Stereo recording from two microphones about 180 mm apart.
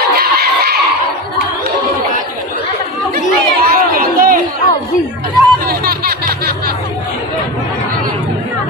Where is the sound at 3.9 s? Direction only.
55° right (ahead or behind).